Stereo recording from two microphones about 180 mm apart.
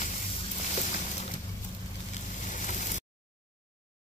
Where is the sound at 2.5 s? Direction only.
45° left (ahead or behind).